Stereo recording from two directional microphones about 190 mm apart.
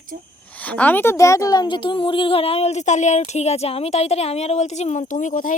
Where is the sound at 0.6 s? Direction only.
10° left (ahead or behind).